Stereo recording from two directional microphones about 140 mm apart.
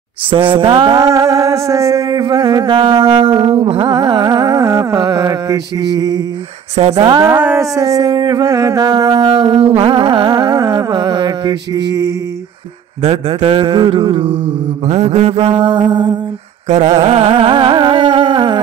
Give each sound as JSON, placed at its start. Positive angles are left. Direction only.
{"t": 0.3, "sound": "music", "side_deg": -35}
{"t": 7.2, "sound": "speech", "side_deg": -15}
{"t": 7.7, "sound": "music", "side_deg": -25}
{"t": 9.3, "sound": "music", "side_deg": -40}
{"t": 13.0, "sound": "music", "side_deg": -45}
{"t": 16.6, "sound": "carnatic music", "side_deg": -55}